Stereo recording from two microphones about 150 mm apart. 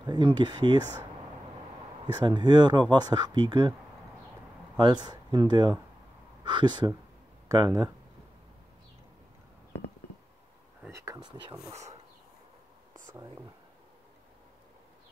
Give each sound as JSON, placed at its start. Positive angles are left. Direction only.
{"t": 0.0, "sound": "speech", "side_deg": -30}
{"t": 2.2, "sound": "speech", "side_deg": -30}
{"t": 4.7, "sound": "speech", "side_deg": -30}
{"t": 10.9, "sound": "a sound", "side_deg": -20}